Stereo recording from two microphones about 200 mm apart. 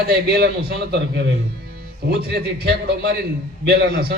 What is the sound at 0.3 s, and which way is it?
Speech, 50° right (ahead or behind).